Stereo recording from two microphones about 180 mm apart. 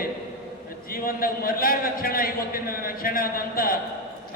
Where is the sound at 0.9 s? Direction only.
55° left (ahead or behind).